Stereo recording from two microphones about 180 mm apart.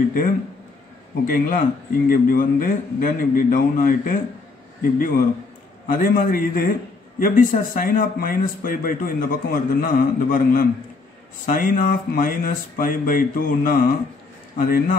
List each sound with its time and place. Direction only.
1.3 s a man's voice: 50° left (ahead or behind)